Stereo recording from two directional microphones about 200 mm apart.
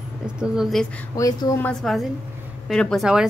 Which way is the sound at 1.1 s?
15° left (ahead or behind).